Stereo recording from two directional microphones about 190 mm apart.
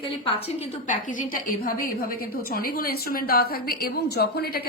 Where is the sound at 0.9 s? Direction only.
45° left (ahead or behind).